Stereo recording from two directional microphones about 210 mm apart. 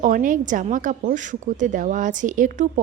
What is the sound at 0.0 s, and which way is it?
A woman's voice, 40° right (ahead or behind).